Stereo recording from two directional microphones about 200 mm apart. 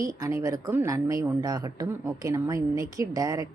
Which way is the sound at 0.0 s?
15° right (ahead or behind).